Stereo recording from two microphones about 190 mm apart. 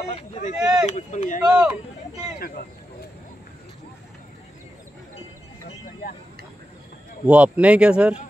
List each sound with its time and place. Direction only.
0.1 s speech: 35° left (ahead or behind)
0.6 s speech: 5° right (ahead or behind)
0.8 s speech: 40° left (ahead or behind)
1.4 s speech: 5° right (ahead or behind)
7.2 s speech: 5° right (ahead or behind)